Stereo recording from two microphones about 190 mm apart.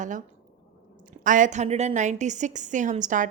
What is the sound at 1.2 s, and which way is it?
A woman's voice, 45° right (ahead or behind).